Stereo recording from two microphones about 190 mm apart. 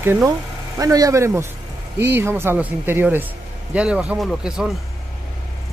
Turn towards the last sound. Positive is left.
turn(degrees=0)  # may be behind; listen again after turning